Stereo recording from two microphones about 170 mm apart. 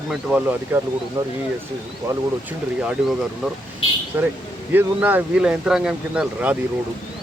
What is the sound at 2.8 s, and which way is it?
Speech, 5° right (ahead or behind).